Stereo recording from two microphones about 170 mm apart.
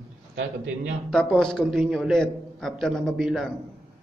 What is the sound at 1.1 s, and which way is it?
A man's voice, 5° left (ahead or behind).